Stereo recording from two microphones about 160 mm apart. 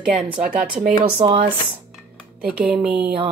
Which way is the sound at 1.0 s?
35° right (ahead or behind).